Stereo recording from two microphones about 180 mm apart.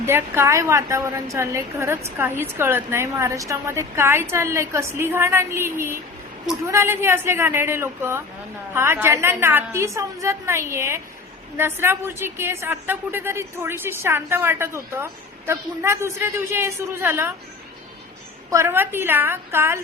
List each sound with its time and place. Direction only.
0.0 s a woman's voice: 15° right (ahead or behind)
18.5 s a woman's voice: 15° right (ahead or behind)